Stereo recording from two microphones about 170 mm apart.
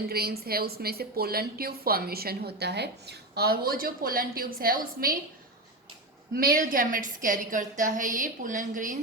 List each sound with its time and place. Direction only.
0.1 s a woman's voice: 65° right (ahead or behind)
6.3 s a woman's voice: 60° right (ahead or behind)